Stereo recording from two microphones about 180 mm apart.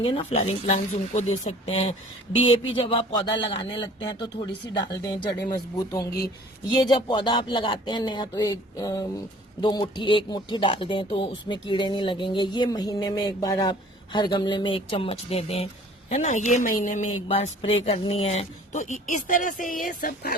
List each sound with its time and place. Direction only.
0.0 s a woman's voice: 35° left (ahead or behind)
5.3 s speech: 65° left (ahead or behind)
5.9 s speech: 20° left (ahead or behind); by 17.0 s 45° left (ahead or behind)
17.2 s speech: 30° left (ahead or behind); by 20.3 s 50° left (ahead or behind)